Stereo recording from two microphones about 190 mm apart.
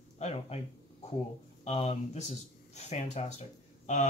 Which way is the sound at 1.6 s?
35° left (ahead or behind).